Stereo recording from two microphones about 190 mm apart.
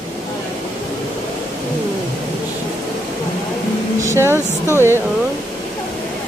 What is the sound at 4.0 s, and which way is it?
Speech, 15° right (ahead or behind).